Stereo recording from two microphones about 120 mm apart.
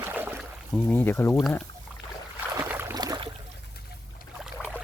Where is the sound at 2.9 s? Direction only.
35° right (ahead or behind).